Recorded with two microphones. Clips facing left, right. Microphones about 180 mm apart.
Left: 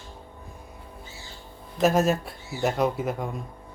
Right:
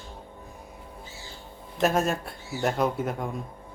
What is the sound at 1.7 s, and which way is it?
Speech, centre (ahead or behind).